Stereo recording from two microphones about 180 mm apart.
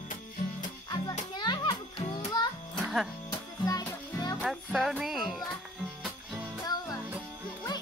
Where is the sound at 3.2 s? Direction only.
20° left (ahead or behind).